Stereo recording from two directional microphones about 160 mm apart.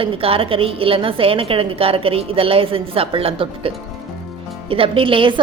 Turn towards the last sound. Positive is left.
turn(degrees=-35)  # may be behind; listen again after turning